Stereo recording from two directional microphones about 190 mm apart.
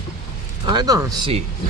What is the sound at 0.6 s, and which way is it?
Speech, 20° right (ahead or behind).